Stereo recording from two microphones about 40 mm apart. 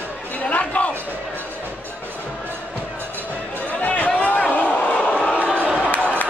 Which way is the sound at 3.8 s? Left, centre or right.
Left.